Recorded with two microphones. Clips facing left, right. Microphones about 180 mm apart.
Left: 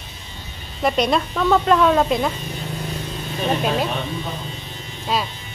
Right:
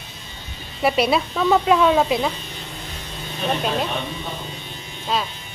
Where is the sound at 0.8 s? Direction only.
5° right (ahead or behind).